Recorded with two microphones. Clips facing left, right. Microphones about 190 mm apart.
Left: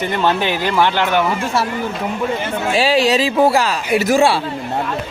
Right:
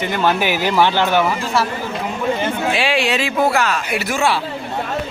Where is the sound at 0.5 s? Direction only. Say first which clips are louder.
Right 1 dB; 10° right (ahead or behind).